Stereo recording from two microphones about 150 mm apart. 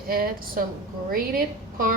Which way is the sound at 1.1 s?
70° right (ahead or behind).